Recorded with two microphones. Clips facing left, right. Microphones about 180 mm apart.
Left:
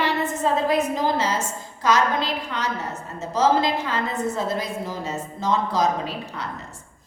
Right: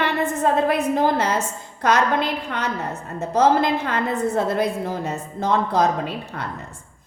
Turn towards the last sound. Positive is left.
turn(degrees=-55)  # may be behind; listen again after turning